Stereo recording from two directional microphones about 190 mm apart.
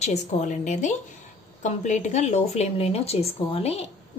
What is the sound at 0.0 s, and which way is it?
A woman's voice, 35° left (ahead or behind).